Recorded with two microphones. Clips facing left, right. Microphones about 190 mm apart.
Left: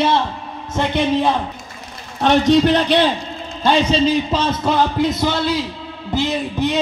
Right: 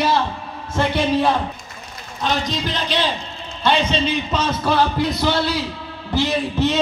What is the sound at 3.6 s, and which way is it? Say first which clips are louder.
A man's voice: left 4 dB; 40° left (ahead or behind).